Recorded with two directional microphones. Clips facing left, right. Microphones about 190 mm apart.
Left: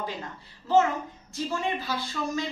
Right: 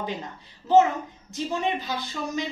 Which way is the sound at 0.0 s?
20° right (ahead or behind).